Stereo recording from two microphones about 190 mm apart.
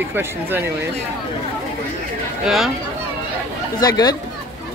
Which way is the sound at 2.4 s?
Centre (ahead or behind).